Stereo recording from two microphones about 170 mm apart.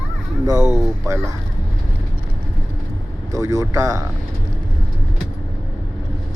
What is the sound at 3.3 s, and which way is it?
Speech, 20° right (ahead or behind).